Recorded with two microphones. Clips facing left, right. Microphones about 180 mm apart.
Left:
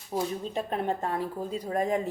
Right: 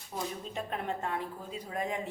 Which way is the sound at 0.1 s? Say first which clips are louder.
Left 7 dB; 35° left (ahead or behind).